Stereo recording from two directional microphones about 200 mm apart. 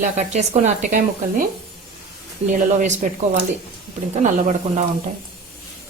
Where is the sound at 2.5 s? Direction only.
40° right (ahead or behind).